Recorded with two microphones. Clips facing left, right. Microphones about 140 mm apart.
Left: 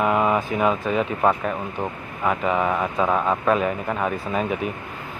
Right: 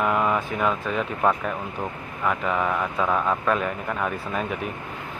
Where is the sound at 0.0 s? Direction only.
10° left (ahead or behind).